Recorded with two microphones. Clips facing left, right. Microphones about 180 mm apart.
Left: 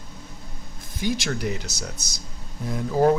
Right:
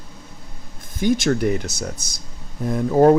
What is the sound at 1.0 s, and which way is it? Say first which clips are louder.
Speech: right 8 dB; 50° right (ahead or behind).